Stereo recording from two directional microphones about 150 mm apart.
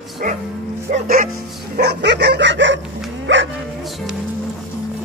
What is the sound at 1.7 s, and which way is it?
Bow-wow, 90° right.